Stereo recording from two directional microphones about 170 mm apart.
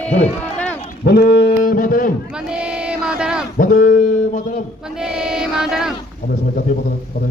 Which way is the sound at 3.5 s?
50° left (ahead or behind).